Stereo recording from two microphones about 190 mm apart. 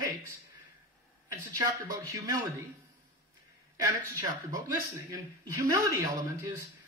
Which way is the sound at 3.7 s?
20° right (ahead or behind).